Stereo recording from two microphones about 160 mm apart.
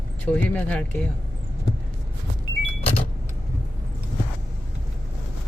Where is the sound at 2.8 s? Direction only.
40° left (ahead or behind).